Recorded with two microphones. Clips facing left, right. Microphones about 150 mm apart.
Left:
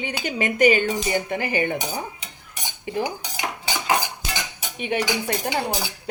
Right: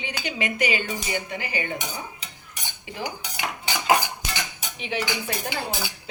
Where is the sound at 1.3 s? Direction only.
50° left (ahead or behind).